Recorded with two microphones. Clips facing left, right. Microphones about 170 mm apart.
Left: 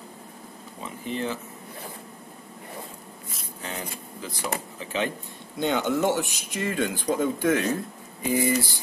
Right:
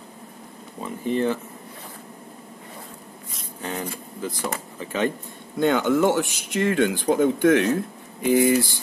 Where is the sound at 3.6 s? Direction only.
50° right (ahead or behind).